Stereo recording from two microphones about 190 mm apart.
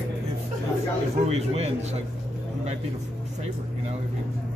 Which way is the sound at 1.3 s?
35° right (ahead or behind).